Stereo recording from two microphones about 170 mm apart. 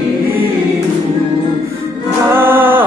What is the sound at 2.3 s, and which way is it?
Music, 10° right (ahead or behind).